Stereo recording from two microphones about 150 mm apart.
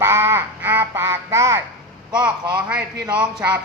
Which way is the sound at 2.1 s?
5° right (ahead or behind).